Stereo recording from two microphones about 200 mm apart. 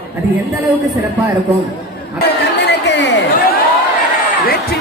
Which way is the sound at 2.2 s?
55° left (ahead or behind).